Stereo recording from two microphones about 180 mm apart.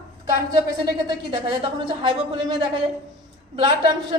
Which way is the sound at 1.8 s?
25° right (ahead or behind).